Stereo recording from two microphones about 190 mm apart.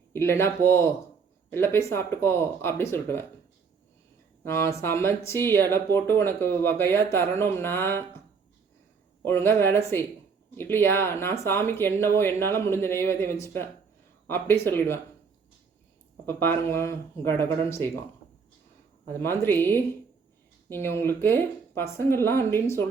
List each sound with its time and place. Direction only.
0.1 s speech: 15° left (ahead or behind)
4.4 s speech: 15° left (ahead or behind)
9.2 s speech: 10° left (ahead or behind)
16.2 s speech: 10° left (ahead or behind)
19.0 s speech: 10° left (ahead or behind)